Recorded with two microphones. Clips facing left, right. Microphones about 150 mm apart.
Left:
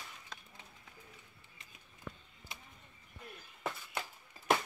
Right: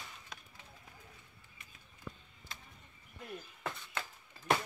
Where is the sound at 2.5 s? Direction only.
15° left (ahead or behind).